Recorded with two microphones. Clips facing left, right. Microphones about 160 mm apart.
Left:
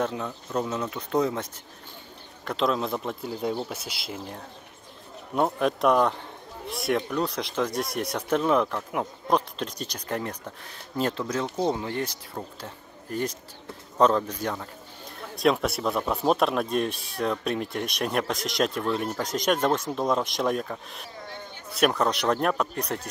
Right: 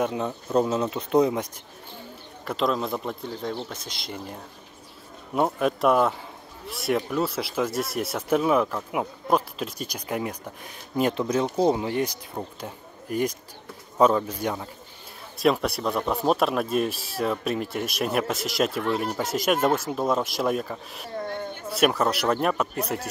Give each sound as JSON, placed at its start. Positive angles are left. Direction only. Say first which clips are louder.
{"t": 0.0, "sound": "speech", "louder": "right 3 dB", "side_deg": -20}
{"t": 2.4, "sound": "speech", "louder": "even", "side_deg": 0}
{"t": 15.3, "sound": "speech", "louder": "right 1 dB", "side_deg": 0}
{"t": 21.2, "sound": "a sound", "louder": "right 11 dB", "side_deg": -55}
{"t": 21.7, "sound": "speech", "louder": "right 1 dB", "side_deg": -5}